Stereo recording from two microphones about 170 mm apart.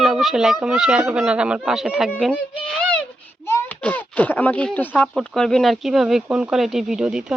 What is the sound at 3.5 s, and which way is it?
A child's voice, 10° left (ahead or behind).